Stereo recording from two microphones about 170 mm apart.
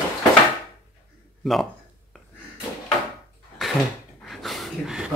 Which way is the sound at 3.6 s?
Centre (ahead or behind).